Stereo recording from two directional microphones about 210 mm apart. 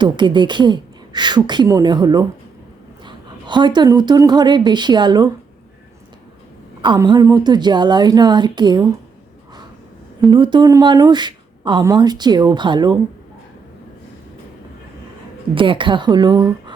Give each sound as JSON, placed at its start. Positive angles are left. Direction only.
{"t": 0.0, "sound": "a woman's voice", "side_deg": -20}
{"t": 6.8, "sound": "a woman's voice", "side_deg": -20}
{"t": 10.2, "sound": "a woman's voice", "side_deg": -20}
{"t": 15.5, "sound": "a woman's voice", "side_deg": -25}